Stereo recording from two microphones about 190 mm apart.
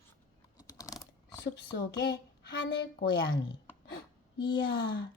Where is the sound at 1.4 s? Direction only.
65° left (ahead or behind).